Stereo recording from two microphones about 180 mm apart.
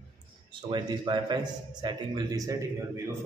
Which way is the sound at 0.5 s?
25° right (ahead or behind).